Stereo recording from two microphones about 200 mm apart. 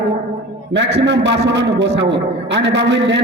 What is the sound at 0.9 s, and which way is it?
A man's voice, 60° right (ahead or behind).